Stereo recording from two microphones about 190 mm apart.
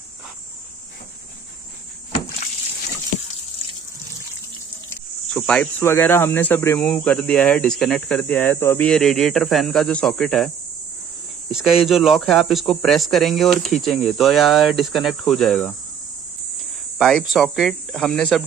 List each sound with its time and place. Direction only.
5.3 s speech: 5° left (ahead or behind)
11.5 s speech: centre (ahead or behind)
17.0 s speech: centre (ahead or behind)